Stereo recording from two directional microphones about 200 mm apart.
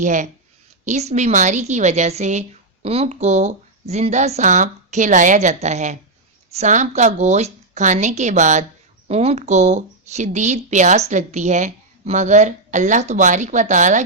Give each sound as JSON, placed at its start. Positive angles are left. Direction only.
{"t": 0.0, "sound": "a woman's voice", "side_deg": -40}